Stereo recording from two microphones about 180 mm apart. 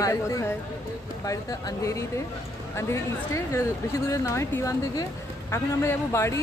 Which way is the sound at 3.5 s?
15° left (ahead or behind).